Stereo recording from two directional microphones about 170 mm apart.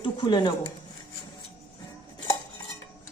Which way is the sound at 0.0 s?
25° left (ahead or behind).